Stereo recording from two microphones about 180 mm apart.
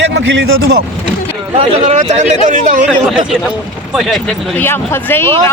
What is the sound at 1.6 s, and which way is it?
Speech, 40° right (ahead or behind).